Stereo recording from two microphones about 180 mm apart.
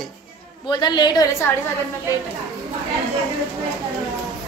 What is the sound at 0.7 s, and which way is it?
Speech, 25° left (ahead or behind).